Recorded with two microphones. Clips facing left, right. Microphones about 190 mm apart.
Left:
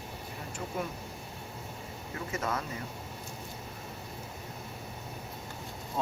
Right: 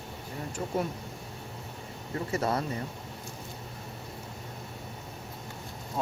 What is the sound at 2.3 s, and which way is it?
Speech, 35° right (ahead or behind).